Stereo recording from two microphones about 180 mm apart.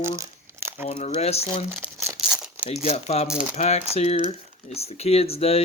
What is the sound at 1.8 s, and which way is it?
Crumpling, 5° right (ahead or behind).